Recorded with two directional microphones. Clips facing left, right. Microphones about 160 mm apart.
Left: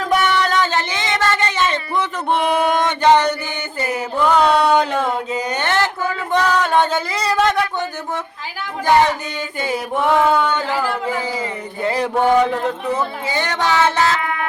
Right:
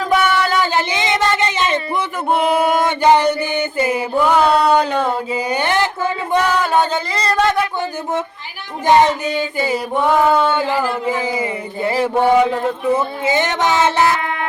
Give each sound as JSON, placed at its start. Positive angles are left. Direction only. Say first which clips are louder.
{"t": 0.0, "sound": "a sound", "louder": "right 1 dB", "side_deg": -5}
{"t": 6.4, "sound": "music", "louder": "left 1 dB", "side_deg": -5}
{"t": 8.8, "sound": "speech", "louder": "right 2 dB", "side_deg": -20}
{"t": 9.6, "sound": "mantra", "louder": "left 1 dB", "side_deg": 0}
{"t": 10.6, "sound": "speech", "louder": "right 2 dB", "side_deg": -15}
{"t": 12.9, "sound": "speech", "louder": "right 4 dB", "side_deg": -20}